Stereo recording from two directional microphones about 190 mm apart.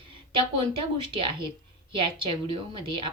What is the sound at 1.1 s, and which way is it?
Speech, 25° right (ahead or behind).